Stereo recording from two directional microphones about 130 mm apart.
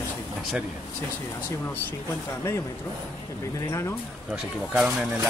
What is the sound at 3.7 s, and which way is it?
Speech, 20° left (ahead or behind).